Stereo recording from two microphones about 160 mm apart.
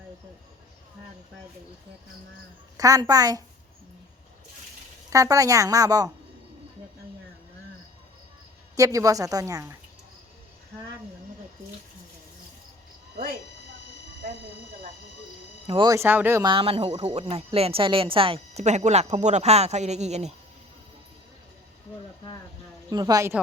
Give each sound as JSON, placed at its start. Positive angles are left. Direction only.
{"t": 2.7, "sound": "speech", "side_deg": -20}
{"t": 5.1, "sound": "speech", "side_deg": -20}
{"t": 8.7, "sound": "speech", "side_deg": -20}
{"t": 15.6, "sound": "speech", "side_deg": -35}
{"t": 15.9, "sound": "speech", "side_deg": -15}
{"t": 16.4, "sound": "speech", "side_deg": -30}
{"t": 22.9, "sound": "speech", "side_deg": -25}